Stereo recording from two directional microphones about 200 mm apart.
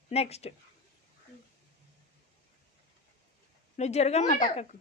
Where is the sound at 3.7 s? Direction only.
35° left (ahead or behind).